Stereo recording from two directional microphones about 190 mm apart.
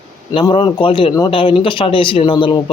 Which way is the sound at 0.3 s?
25° left (ahead or behind).